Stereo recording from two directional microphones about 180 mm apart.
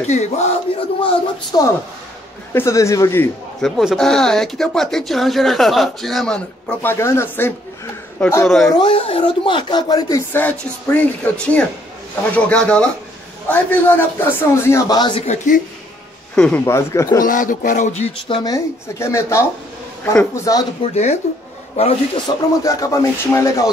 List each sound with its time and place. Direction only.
0.0 s a sound: 40° left (ahead or behind)
1.5 s a man's voice: 20° left (ahead or behind)
3.6 s speech: centre (ahead or behind)
8.6 s a man's voice: 25° left (ahead or behind)
15.2 s a man's voice: 45° left (ahead or behind)
16.3 s a man's voice: 10° left (ahead or behind)
17.2 s a man's voice: 50° left (ahead or behind)
18.4 s a man's voice: 20° left (ahead or behind)
20.5 s speech: 20° left (ahead or behind)
20.8 s a sound: 40° left (ahead or behind)
22.6 s a man's voice: 20° left (ahead or behind)